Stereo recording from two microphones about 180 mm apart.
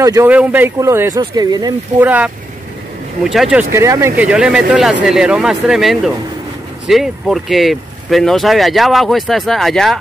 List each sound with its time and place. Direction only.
0.0 s speech: 20° right (ahead or behind)
2.0 s speech: 10° right (ahead or behind)
3.7 s speech: 15° right (ahead or behind); by 9.9 s centre (ahead or behind)